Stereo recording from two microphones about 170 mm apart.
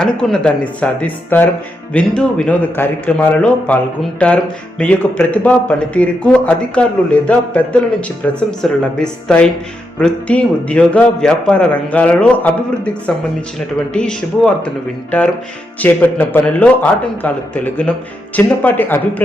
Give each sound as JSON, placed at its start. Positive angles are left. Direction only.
{"t": 0.0, "sound": "speech", "side_deg": 5}